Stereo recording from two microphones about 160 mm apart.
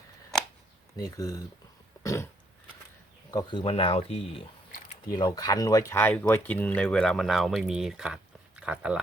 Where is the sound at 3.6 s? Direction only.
35° left (ahead or behind).